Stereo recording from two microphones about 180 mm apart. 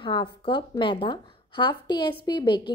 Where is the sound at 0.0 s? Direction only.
25° left (ahead or behind).